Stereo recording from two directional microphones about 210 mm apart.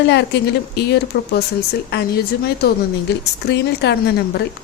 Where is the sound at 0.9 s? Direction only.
50° left (ahead or behind).